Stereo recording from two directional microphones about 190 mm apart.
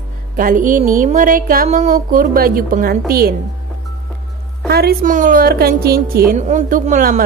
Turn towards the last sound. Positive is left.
turn(degrees=-40)  # may be behind; listen again after turning